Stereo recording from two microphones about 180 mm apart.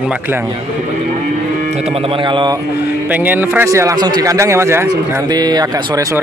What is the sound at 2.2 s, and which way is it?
Speech, 25° right (ahead or behind).